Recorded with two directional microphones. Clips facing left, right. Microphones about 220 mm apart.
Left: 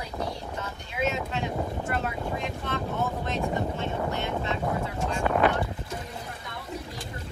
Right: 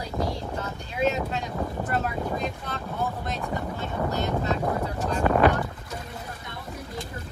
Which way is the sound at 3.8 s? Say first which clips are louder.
Right 2 dB; 40° right (ahead or behind).